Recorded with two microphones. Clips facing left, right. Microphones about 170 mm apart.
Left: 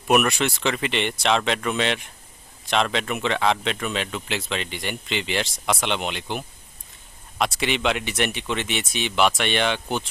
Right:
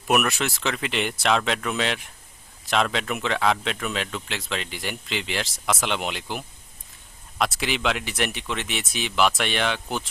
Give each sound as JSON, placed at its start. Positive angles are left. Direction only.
{"t": 0.1, "sound": "speech", "side_deg": 0}